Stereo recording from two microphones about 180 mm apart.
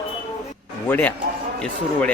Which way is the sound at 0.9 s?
10° left (ahead or behind).